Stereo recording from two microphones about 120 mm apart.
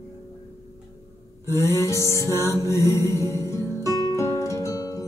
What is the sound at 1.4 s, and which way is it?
Music, 25° left (ahead or behind).